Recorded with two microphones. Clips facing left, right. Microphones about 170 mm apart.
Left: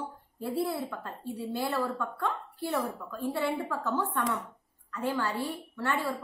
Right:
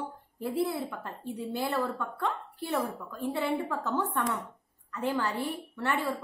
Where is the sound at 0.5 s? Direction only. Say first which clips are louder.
Right 1 dB; 20° right (ahead or behind).